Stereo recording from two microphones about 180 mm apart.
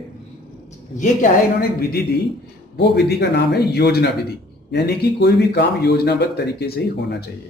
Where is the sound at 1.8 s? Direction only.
60° left (ahead or behind).